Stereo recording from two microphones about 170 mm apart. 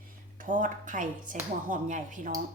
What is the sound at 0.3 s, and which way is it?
A woman's voice, 50° right (ahead or behind).